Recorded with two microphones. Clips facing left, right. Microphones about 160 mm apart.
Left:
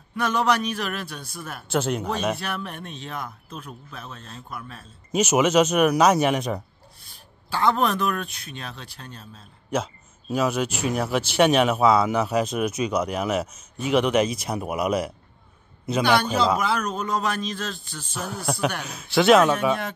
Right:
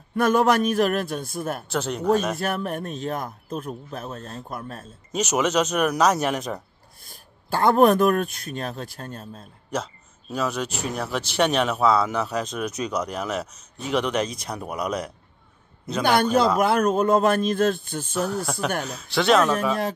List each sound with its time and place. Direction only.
0.1 s a man's voice: 50° right (ahead or behind)
1.7 s speech: centre (ahead or behind)
2.3 s a man's voice: 45° right (ahead or behind)
5.1 s speech: 5° left (ahead or behind)
7.1 s a man's voice: 50° right (ahead or behind)
10.3 s speech: 5° left (ahead or behind)
16.0 s a man's voice: 50° right (ahead or behind)
18.2 s speech: 5° left (ahead or behind)